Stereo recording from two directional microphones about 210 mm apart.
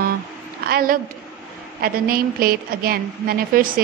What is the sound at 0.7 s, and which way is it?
A woman's voice, 45° right (ahead or behind).